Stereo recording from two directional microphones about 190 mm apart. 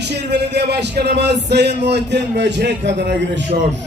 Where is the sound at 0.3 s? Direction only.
60° right (ahead or behind).